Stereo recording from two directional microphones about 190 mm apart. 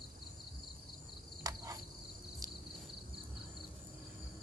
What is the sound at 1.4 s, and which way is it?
Cricket, 20° right (ahead or behind).